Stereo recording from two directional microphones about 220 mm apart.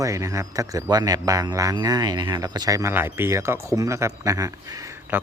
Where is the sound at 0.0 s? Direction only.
15° right (ahead or behind).